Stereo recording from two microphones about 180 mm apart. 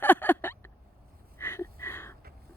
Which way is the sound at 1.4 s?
10° left (ahead or behind).